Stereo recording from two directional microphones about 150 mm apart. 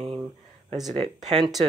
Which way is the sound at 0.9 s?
50° right (ahead or behind).